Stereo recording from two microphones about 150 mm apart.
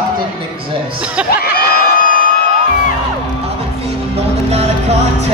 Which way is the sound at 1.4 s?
90° left.